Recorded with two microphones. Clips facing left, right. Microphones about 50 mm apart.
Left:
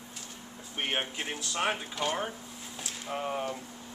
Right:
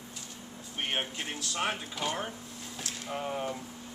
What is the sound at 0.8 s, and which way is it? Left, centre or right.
Speech, centre.